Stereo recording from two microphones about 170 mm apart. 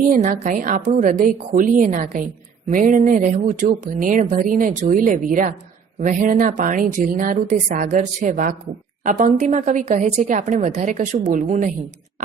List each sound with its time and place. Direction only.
0.1 s a woman's voice: 50° right (ahead or behind)